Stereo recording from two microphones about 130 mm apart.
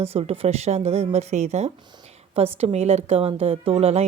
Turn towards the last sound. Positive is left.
turn(degrees=-55)  # may be behind; listen again after turning